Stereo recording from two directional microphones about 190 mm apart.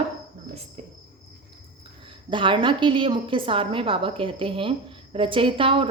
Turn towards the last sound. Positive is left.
turn(degrees=-30)  # may be behind; listen again after turning